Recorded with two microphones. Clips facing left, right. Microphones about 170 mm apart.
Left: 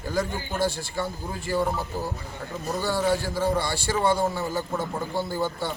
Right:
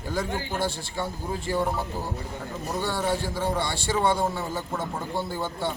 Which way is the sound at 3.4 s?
25° right (ahead or behind).